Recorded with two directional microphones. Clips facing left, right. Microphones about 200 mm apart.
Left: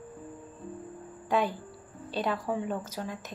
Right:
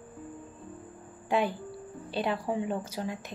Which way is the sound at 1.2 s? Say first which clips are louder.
Even; 10° right (ahead or behind).